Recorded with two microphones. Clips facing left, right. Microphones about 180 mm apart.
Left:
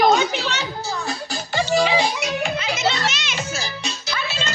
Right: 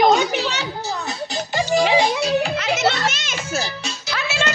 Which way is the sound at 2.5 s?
70° right (ahead or behind).